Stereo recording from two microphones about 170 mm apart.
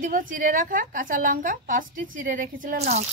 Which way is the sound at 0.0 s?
50° right (ahead or behind).